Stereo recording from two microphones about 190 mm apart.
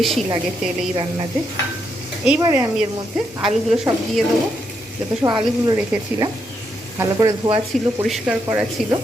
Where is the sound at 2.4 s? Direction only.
15° right (ahead or behind).